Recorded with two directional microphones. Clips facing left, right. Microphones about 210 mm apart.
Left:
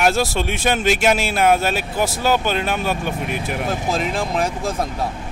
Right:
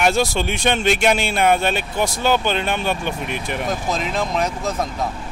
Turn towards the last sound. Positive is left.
turn(degrees=30)  # may be behind; listen again after turning